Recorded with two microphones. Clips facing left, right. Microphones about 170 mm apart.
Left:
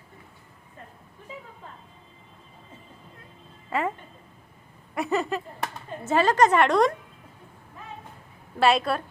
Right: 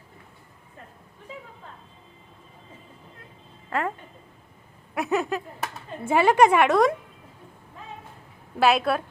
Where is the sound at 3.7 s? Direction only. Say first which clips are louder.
Even; centre (ahead or behind).